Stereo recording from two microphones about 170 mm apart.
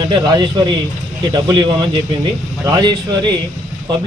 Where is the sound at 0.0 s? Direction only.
25° right (ahead or behind).